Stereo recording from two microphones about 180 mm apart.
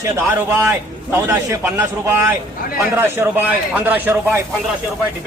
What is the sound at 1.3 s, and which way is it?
A man's voice, 10° right (ahead or behind).